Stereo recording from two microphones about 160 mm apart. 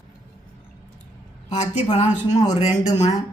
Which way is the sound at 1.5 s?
40° left (ahead or behind).